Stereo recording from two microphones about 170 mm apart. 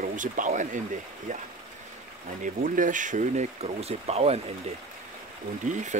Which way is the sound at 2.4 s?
50° right (ahead or behind).